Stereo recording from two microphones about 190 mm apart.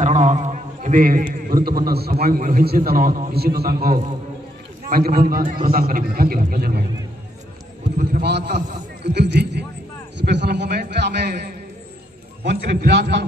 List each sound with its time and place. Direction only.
0.0 s mantra: 40° right (ahead or behind)
1.5 s a man's voice: 50° right (ahead or behind)
8.1 s a man's voice: 60° right (ahead or behind)